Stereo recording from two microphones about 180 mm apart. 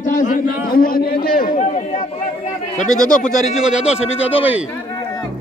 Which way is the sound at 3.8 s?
5° right (ahead or behind).